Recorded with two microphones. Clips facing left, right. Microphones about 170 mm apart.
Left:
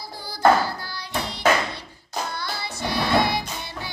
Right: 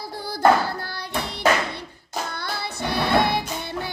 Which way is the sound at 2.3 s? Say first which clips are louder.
Right 1 dB; 60° right (ahead or behind).